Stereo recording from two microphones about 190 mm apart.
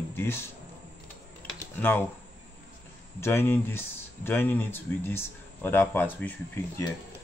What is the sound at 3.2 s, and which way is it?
Speech, 10° left (ahead or behind).